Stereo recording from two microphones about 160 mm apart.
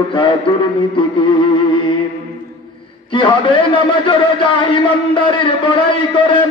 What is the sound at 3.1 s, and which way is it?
A man's voice, 30° left (ahead or behind).